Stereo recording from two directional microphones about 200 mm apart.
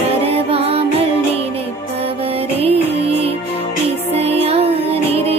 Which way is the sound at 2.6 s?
30° right (ahead or behind).